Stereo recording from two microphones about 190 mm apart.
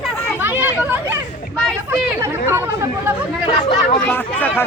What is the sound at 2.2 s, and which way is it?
Chatter, 10° right (ahead or behind).